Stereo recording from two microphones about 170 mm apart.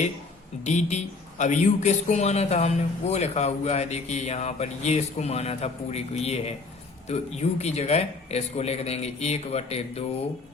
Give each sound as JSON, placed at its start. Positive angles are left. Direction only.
{"t": 0.6, "sound": "a man's voice", "side_deg": 45}